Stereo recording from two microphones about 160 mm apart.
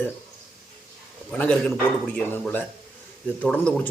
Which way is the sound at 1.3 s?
10° left (ahead or behind).